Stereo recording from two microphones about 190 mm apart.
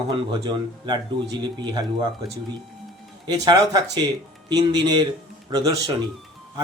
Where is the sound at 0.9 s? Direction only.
25° right (ahead or behind).